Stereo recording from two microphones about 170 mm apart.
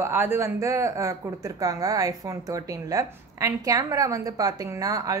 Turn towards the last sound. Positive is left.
turn(degrees=-20)  # may be behind; listen again after turning